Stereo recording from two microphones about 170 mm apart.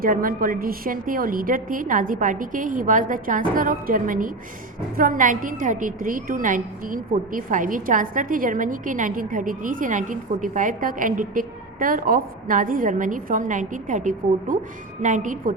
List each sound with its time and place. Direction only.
0.0 s a woman's voice: 55° right (ahead or behind)